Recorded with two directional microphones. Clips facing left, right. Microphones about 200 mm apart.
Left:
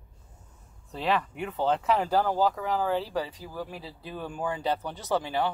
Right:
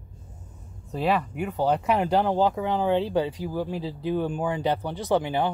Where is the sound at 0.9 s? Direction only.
10° right (ahead or behind).